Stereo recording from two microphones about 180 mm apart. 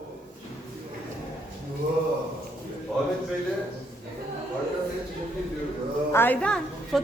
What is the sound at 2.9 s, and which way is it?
Speech, centre (ahead or behind).